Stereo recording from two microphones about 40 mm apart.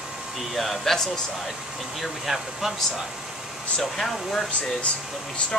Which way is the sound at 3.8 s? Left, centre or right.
Centre.